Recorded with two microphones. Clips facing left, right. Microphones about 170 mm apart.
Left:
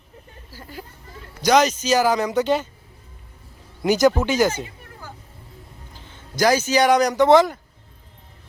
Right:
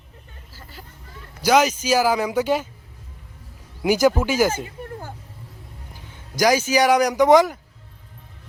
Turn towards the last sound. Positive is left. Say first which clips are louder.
# even
turn(degrees=-10)  # may be behind; listen again after turning